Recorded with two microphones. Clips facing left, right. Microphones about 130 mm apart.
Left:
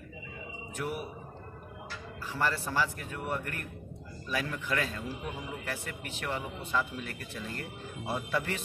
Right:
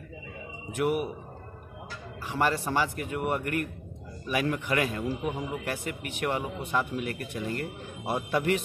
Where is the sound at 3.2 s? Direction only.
65° right (ahead or behind).